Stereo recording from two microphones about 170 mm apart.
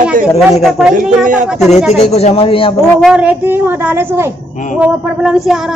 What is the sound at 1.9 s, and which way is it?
Speech, 40° left (ahead or behind).